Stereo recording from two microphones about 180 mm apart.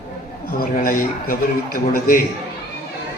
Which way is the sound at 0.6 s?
50° left (ahead or behind).